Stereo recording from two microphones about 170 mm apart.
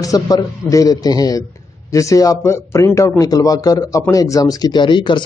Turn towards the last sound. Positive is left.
turn(degrees=25)  # may be behind; listen again after turning